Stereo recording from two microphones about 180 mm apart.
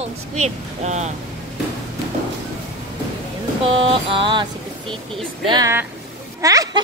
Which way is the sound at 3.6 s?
30° right (ahead or behind).